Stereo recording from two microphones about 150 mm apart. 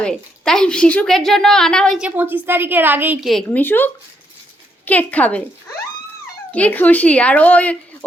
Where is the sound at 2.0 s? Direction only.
10° right (ahead or behind).